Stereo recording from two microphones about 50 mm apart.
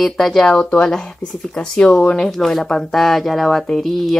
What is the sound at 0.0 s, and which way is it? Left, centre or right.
Speech, centre.